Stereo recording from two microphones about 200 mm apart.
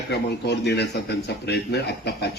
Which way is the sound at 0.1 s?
55° left (ahead or behind).